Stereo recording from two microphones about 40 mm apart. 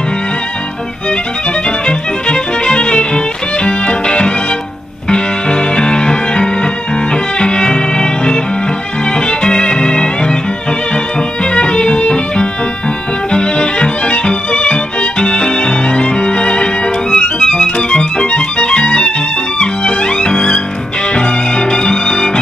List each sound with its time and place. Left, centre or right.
1.9 s music: left
11.5 s music: left
13.3 s violin: left
19.6 s music: left